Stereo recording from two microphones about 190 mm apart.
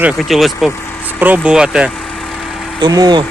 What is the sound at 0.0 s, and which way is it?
Speech, centre (ahead or behind).